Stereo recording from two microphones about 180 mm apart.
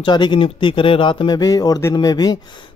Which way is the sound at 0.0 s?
25° left (ahead or behind).